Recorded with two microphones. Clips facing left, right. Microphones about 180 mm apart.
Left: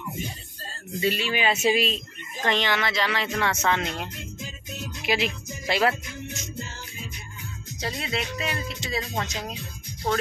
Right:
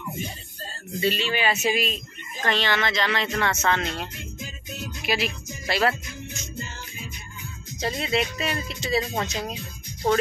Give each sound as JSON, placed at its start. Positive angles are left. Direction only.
{"t": 1.0, "sound": "speech", "side_deg": 10}
{"t": 2.4, "sound": "speech", "side_deg": 15}
{"t": 7.8, "sound": "speech", "side_deg": 0}